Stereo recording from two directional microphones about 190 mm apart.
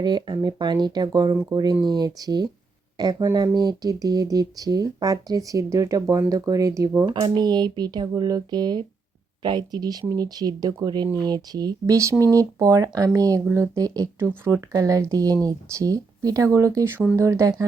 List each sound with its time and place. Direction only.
0.0 s speech: 20° right (ahead or behind)